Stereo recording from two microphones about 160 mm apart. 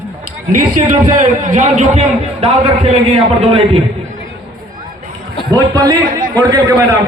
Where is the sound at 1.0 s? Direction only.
55° right (ahead or behind).